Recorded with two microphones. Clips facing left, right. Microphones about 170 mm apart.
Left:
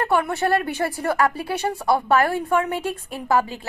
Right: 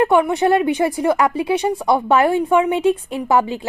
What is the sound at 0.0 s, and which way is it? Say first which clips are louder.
Speech: right 6 dB; 15° right (ahead or behind).